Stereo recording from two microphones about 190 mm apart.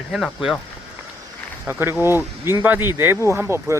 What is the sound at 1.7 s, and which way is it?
Speech, 10° right (ahead or behind).